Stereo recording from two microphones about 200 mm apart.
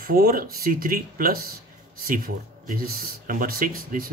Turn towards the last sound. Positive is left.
turn(degrees=-45)  # may be behind; listen again after turning